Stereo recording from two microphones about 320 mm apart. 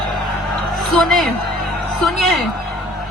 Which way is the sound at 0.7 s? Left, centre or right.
Centre.